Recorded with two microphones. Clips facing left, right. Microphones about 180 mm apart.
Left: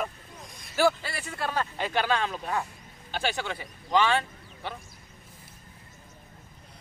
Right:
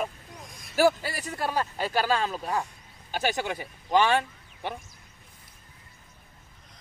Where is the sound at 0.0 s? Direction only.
Centre (ahead or behind).